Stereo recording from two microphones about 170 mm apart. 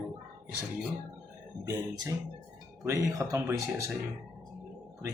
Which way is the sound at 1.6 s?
20° right (ahead or behind).